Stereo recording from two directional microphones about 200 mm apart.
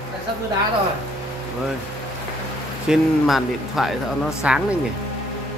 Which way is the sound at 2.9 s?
Centre (ahead or behind).